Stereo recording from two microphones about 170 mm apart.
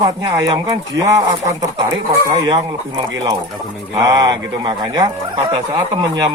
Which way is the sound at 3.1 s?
25° right (ahead or behind).